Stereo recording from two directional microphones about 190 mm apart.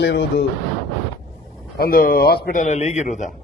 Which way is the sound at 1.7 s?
50° left (ahead or behind).